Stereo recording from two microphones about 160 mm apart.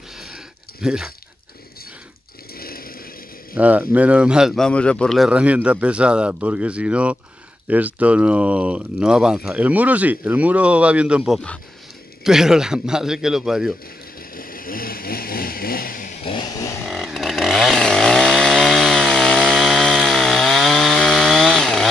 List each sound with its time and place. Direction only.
0.8 s speech: 5° right (ahead or behind)
2.5 s chainsaw: 65° left (ahead or behind)
3.5 s speech: 10° right (ahead or behind)
14.3 s vehicle: 65° left (ahead or behind)
16.2 s vehicle: 30° left (ahead or behind)
16.8 s chainsaw: centre (ahead or behind)